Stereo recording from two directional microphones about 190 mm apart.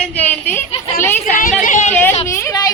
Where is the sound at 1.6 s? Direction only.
40° left (ahead or behind).